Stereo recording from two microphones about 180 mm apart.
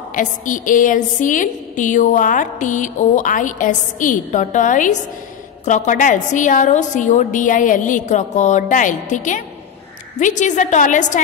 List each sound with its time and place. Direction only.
0.1 s a woman's voice: 45° left (ahead or behind)